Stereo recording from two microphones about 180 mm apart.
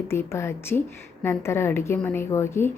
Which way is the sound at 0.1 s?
15° left (ahead or behind).